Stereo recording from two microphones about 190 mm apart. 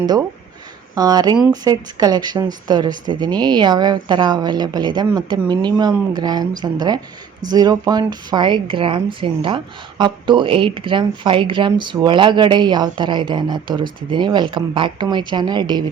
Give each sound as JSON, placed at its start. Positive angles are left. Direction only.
{"t": 0.9, "sound": "speech", "side_deg": -20}